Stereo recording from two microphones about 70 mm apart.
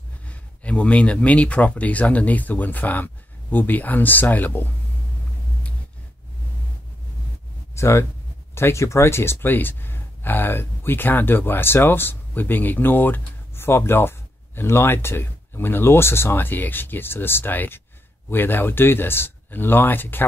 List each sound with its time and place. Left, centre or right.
0.3 s speech: centre
7.7 s speech: left